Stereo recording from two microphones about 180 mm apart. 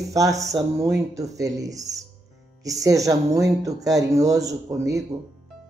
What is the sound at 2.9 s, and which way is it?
Speech, 20° right (ahead or behind).